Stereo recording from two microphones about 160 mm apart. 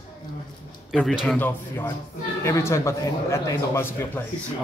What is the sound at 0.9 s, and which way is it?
Speech, centre (ahead or behind).